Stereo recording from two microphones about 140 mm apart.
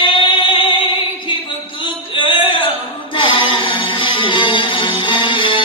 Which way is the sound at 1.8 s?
35° left (ahead or behind).